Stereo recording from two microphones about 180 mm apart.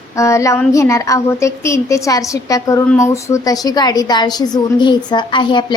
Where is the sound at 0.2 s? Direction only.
15° left (ahead or behind).